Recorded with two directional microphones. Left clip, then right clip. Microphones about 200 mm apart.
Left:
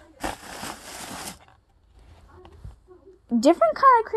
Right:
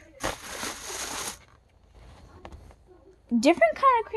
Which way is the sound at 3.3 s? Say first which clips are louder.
Left 2 dB; 5° right (ahead or behind).